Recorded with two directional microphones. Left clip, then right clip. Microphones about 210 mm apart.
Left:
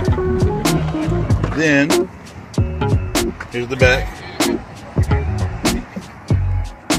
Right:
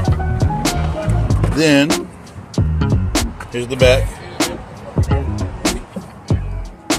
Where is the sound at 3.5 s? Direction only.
10° right (ahead or behind).